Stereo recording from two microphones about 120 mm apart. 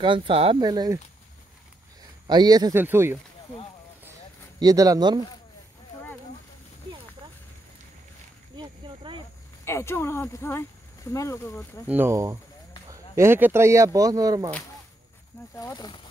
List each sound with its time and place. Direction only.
0.0 s speech: 45° right (ahead or behind)
0.6 s speech: 35° right (ahead or behind)
2.2 s speech: 35° right (ahead or behind)
2.7 s speech: 20° right (ahead or behind)
4.6 s speech: 30° right (ahead or behind)
8.5 s a sound: 45° right (ahead or behind)
9.7 s speech: 20° left (ahead or behind)
11.9 s speech: 20° right (ahead or behind)
15.5 s speech: 30° left (ahead or behind)